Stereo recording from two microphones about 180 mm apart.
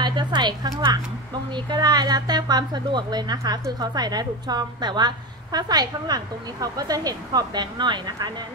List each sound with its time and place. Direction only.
0.0 s a woman's voice: 25° right (ahead or behind)